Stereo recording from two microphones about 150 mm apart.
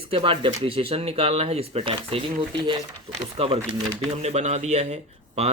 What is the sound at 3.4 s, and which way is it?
Speech, 40° right (ahead or behind).